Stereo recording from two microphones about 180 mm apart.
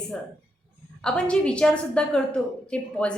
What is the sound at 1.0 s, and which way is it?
A woman's voice, 5° left (ahead or behind).